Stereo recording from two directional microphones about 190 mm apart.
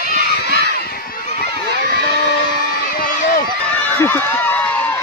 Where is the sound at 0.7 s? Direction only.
50° left (ahead or behind).